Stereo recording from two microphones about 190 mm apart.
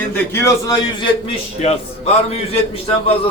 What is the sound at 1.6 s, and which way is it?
Speech, 35° left (ahead or behind).